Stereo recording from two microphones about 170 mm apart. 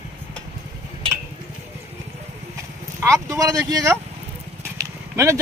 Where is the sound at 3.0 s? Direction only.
15° right (ahead or behind).